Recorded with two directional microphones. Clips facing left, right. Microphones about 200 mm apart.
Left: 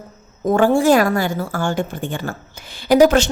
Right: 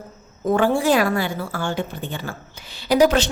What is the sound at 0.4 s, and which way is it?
A woman's voice, 45° left (ahead or behind).